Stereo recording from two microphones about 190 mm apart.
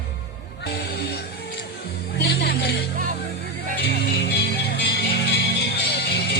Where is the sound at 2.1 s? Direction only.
60° left (ahead or behind).